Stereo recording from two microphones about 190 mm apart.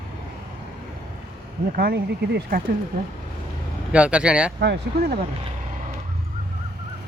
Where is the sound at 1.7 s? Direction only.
55° right (ahead or behind).